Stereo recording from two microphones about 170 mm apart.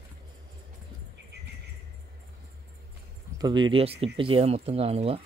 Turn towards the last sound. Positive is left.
turn(degrees=-35)  # may be behind; listen again after turning